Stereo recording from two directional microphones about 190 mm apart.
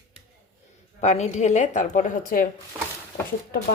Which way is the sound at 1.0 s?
35° left (ahead or behind).